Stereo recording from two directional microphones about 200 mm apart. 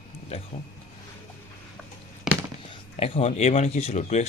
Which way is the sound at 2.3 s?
Centre (ahead or behind).